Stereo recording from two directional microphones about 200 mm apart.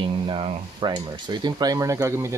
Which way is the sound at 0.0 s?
25° right (ahead or behind).